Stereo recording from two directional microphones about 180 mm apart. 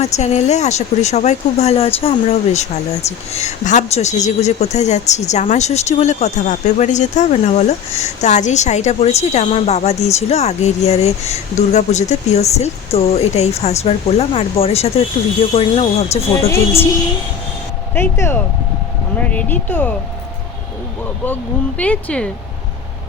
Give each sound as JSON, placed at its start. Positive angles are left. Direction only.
{"t": 0.0, "sound": "a woman's voice", "side_deg": 40}
{"t": 16.3, "sound": "speech", "side_deg": 15}
{"t": 17.9, "sound": "speech", "side_deg": 15}
{"t": 21.8, "sound": "speech", "side_deg": 5}